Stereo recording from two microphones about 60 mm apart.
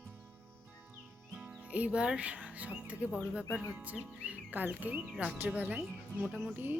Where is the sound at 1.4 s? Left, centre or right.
Right.